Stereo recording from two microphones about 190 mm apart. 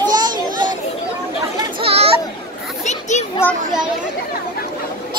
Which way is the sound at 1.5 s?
30° right (ahead or behind).